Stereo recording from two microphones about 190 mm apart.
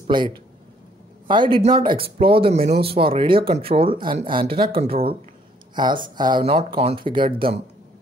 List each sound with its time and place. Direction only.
1.2 s speech: 25° right (ahead or behind)
4.7 s speech: 50° right (ahead or behind)
5.8 s speech: 25° right (ahead or behind)